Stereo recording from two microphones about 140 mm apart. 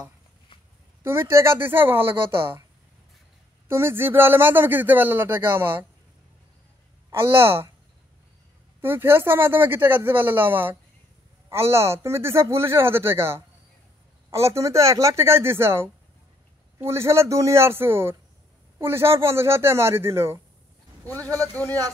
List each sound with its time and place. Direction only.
1.0 s a man's voice: 15° right (ahead or behind)
3.6 s a man's voice: 15° right (ahead or behind)
7.1 s a man's voice: 15° right (ahead or behind)
8.8 s a man's voice: 15° right (ahead or behind)